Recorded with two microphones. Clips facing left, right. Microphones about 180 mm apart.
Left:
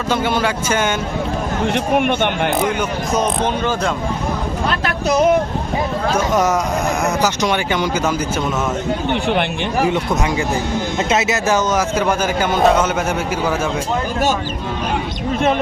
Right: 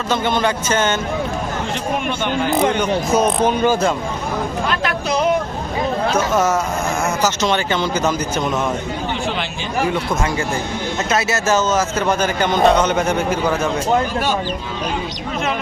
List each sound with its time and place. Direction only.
0.1 s a man's voice: 10° left (ahead or behind)
2.0 s speech: 60° left (ahead or behind)
3.2 s speech: 10° right (ahead or behind)
6.1 s a man's voice: 15° left (ahead or behind)
11.1 s a man's voice: 15° left (ahead or behind)